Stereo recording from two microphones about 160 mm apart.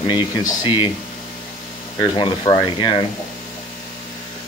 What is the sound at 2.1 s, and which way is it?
Speech, 30° left (ahead or behind).